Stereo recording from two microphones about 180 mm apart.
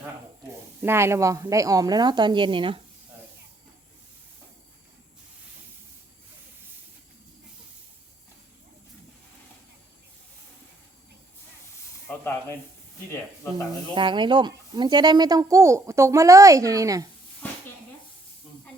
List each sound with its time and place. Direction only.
0.8 s speech: 15° right (ahead or behind)
12.0 s snake: 10° left (ahead or behind)
13.9 s speech: 25° right (ahead or behind)